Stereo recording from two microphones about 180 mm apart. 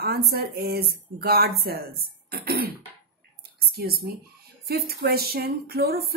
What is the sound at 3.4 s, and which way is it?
Whispering, 60° right (ahead or behind).